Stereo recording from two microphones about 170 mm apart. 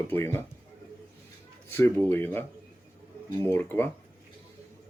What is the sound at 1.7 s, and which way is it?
Speech, 15° left (ahead or behind).